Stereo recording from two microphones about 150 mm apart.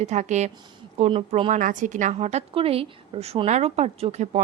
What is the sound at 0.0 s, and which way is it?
A woman's voice, 50° right (ahead or behind).